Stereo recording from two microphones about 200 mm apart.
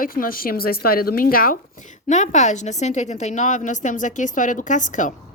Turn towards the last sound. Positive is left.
turn(degrees=40)  # may be behind; listen again after turning